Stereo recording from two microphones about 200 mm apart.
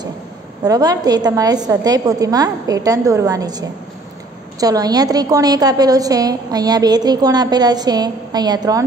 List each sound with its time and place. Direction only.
0.7 s a woman's voice: 20° right (ahead or behind)